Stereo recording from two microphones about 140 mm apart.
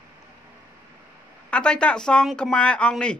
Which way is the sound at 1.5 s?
5° left (ahead or behind).